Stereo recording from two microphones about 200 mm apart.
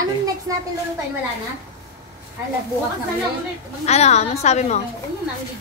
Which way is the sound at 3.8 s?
35° left (ahead or behind).